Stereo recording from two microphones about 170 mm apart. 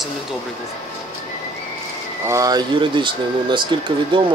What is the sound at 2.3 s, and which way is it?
Speech, 20° right (ahead or behind).